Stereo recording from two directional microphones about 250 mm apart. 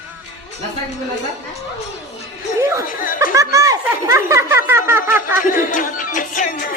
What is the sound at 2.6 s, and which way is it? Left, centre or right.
Speech, centre.